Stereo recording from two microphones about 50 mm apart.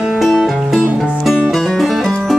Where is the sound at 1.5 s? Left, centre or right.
Centre.